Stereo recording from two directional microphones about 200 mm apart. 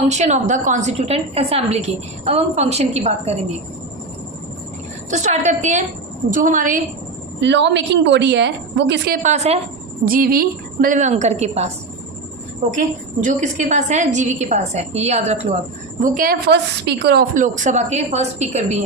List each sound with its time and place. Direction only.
0.1 s a woman's voice: 35° right (ahead or behind)
5.1 s a woman's voice: 35° right (ahead or behind)
7.4 s a woman's voice: 60° right (ahead or behind)
9.2 s a woman's voice: 35° right (ahead or behind)
10.1 s a woman's voice: 45° right (ahead or behind)
16.0 s a woman's voice: 45° right (ahead or behind)
17.3 s a woman's voice: 40° right (ahead or behind)